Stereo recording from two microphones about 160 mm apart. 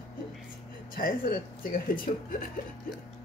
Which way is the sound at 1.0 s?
60° left (ahead or behind).